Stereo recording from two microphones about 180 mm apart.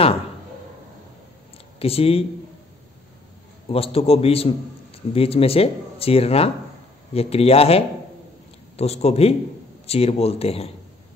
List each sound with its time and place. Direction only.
1.8 s a man's voice: 35° left (ahead or behind)
3.6 s a man's voice: 30° left (ahead or behind)